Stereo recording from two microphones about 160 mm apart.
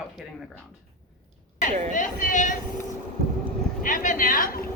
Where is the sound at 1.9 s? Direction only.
55° left (ahead or behind).